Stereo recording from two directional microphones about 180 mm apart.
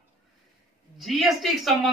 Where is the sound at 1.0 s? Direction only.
Centre (ahead or behind).